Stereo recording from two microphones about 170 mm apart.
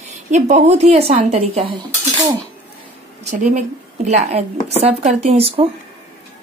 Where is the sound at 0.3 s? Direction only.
45° right (ahead or behind).